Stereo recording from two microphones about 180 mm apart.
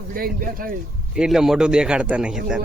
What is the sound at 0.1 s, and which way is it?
Speech, 50° right (ahead or behind).